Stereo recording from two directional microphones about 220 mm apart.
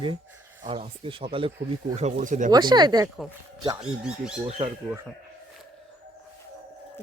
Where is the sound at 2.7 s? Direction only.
20° right (ahead or behind).